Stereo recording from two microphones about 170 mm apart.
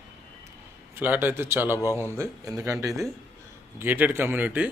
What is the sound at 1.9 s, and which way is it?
Speech, 15° left (ahead or behind).